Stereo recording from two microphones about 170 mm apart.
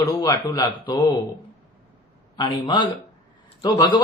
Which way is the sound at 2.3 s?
25° left (ahead or behind).